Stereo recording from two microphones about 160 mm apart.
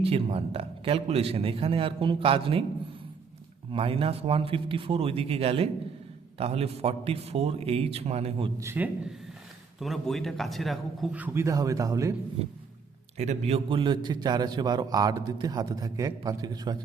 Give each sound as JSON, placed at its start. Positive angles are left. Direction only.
{"t": 0.0, "sound": "a man's voice", "side_deg": -35}
{"t": 3.7, "sound": "a man's voice", "side_deg": -35}
{"t": 8.5, "sound": "a man's voice", "side_deg": -15}
{"t": 9.8, "sound": "a man's voice", "side_deg": 0}
{"t": 12.4, "sound": "a man's voice", "side_deg": -40}